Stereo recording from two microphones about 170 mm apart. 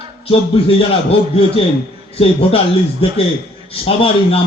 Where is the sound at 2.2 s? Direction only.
35° left (ahead or behind).